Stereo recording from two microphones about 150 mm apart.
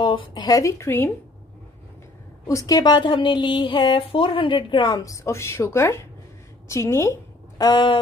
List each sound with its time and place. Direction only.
0.0 s speech: 35° left (ahead or behind); by 1.1 s 15° left (ahead or behind)
2.4 s a woman's voice: 20° left (ahead or behind)